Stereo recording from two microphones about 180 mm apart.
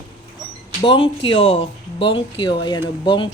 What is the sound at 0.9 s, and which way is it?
Speech, 30° left (ahead or behind).